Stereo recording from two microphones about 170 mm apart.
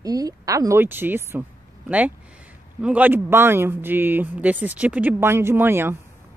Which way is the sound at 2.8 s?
10° right (ahead or behind).